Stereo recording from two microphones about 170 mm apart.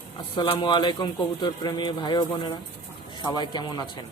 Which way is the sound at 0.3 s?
30° left (ahead or behind).